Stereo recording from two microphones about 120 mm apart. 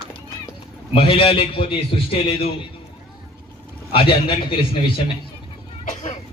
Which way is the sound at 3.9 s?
45° left (ahead or behind).